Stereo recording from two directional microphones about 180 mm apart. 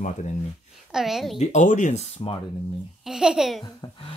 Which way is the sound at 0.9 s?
Centre (ahead or behind).